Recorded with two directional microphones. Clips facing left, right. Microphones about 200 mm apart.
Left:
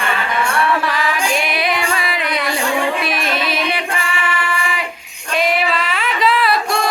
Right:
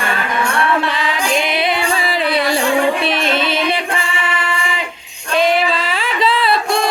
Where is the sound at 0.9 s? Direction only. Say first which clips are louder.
Even; 20° right (ahead or behind).